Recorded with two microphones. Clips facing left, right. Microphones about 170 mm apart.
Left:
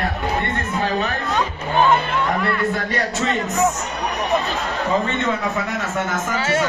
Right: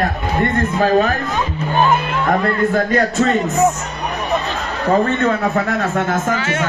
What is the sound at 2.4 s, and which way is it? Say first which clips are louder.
Speech: right 5 dB; 40° right (ahead or behind).